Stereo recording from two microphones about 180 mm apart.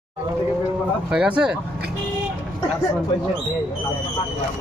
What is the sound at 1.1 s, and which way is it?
Speech, 5° right (ahead or behind).